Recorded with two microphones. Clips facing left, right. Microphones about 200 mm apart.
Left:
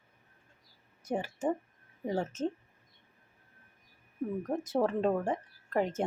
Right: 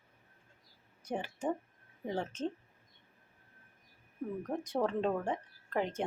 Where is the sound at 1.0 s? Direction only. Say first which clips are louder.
Left 4 dB; 10° left (ahead or behind).